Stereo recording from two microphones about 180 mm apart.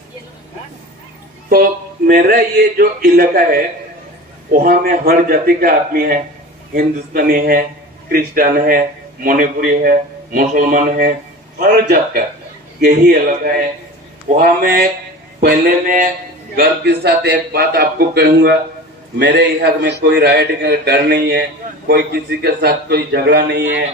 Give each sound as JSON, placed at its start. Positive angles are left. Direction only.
{"t": 2.0, "sound": "a man's voice", "side_deg": -55}
{"t": 16.6, "sound": "a man's voice", "side_deg": -65}